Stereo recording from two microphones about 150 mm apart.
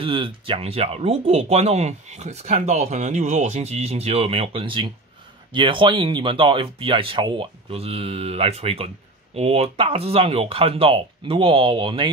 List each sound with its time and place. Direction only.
0.0 s speech: 35° right (ahead or behind)